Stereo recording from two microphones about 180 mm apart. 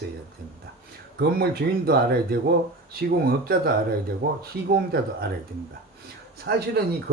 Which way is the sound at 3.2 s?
55° right (ahead or behind).